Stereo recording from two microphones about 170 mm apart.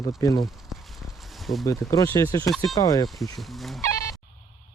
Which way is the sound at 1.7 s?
20° left (ahead or behind).